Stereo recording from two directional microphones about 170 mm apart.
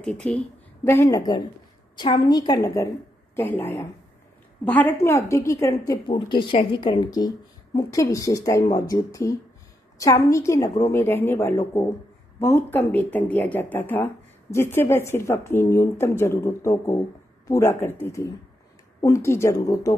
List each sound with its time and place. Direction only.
0.0 s speech: 5° left (ahead or behind)
0.8 s speech: 15° left (ahead or behind)
6.0 s speech: 30° left (ahead or behind)